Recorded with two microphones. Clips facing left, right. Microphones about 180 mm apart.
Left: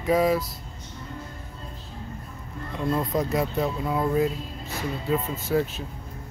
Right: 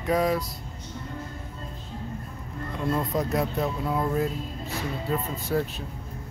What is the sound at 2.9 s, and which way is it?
Speech, centre (ahead or behind).